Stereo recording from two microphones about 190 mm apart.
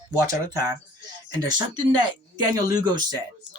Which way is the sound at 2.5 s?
20° right (ahead or behind).